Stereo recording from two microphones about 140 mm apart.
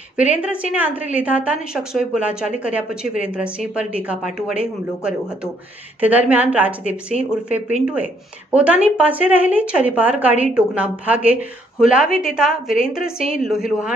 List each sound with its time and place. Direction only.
0.2 s a woman's voice: 10° right (ahead or behind)